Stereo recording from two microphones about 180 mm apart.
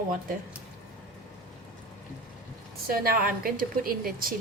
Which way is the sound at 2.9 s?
55° right (ahead or behind).